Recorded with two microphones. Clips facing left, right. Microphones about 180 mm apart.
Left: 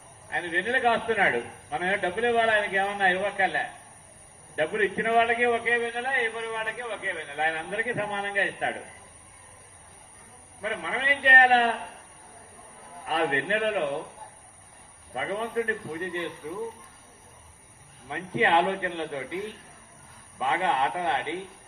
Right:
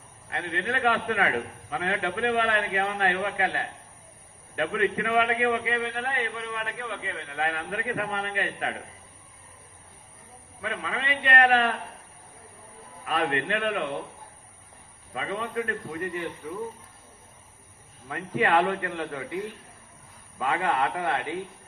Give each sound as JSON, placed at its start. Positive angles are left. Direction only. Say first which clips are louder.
{"t": 0.3, "sound": "a man's voice", "louder": "left 1 dB", "side_deg": 30}
{"t": 10.6, "sound": "a man's voice", "louder": "left 1 dB", "side_deg": 30}
{"t": 13.1, "sound": "a man's voice", "louder": "left 1 dB", "side_deg": 35}
{"t": 15.1, "sound": "a man's voice", "louder": "left 2 dB", "side_deg": 35}
{"t": 18.1, "sound": "a man's voice", "louder": "even", "side_deg": 25}